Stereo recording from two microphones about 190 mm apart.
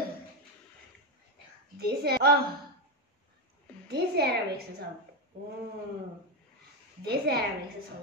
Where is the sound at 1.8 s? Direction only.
55° right (ahead or behind).